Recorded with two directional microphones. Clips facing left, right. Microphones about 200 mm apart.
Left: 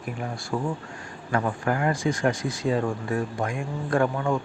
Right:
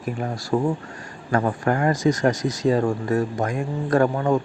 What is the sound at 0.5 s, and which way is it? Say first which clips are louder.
Speech: right 7 dB; 35° right (ahead or behind).